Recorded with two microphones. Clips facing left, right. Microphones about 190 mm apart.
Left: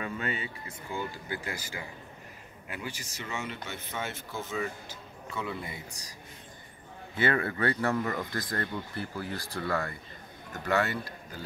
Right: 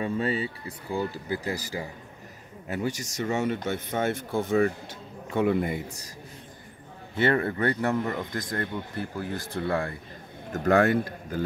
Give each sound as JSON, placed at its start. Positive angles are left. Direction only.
{"t": 0.0, "sound": "speech", "side_deg": -30}
{"t": 7.2, "sound": "speech", "side_deg": -25}
{"t": 10.5, "sound": "speech", "side_deg": -50}